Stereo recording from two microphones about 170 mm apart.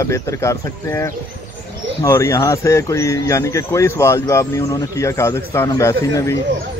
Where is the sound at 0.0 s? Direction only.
15° left (ahead or behind).